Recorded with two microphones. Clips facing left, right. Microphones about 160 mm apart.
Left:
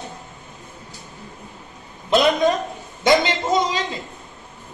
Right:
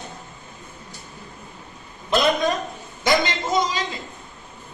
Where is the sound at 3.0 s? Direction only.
25° left (ahead or behind).